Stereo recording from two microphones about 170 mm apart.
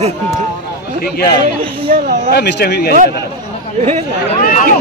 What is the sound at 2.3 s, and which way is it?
Speech, 80° left.